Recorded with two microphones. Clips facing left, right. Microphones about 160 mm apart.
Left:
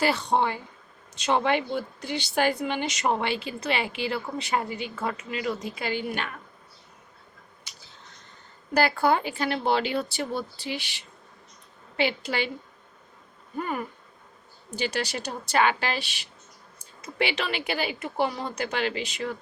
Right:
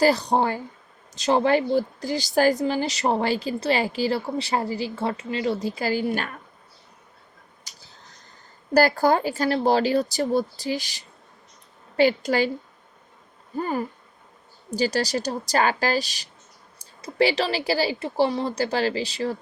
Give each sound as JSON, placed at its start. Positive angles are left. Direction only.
{"t": 0.0, "sound": "speech", "side_deg": -35}
{"t": 7.7, "sound": "a sound", "side_deg": -40}
{"t": 8.7, "sound": "speech", "side_deg": -40}
{"t": 13.6, "sound": "speech", "side_deg": -35}